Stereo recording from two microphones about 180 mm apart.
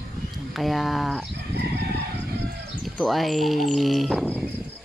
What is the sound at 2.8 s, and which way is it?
Speech, centre (ahead or behind).